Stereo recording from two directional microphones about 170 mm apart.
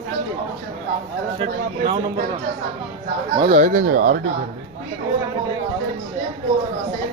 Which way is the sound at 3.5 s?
50° right (ahead or behind).